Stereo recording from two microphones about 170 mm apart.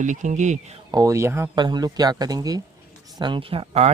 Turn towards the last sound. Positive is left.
turn(degrees=-35)  # may be behind; listen again after turning